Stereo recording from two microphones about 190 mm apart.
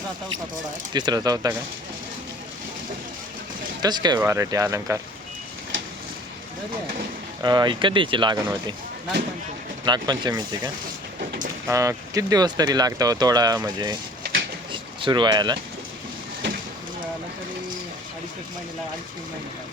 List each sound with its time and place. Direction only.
0.9 s speech: 20° right (ahead or behind)
3.8 s speech: 20° right (ahead or behind)
7.4 s speech: 20° right (ahead or behind)
9.8 s speech: 20° right (ahead or behind)
11.7 s speech: 15° right (ahead or behind)
14.7 s a sound: 25° right (ahead or behind)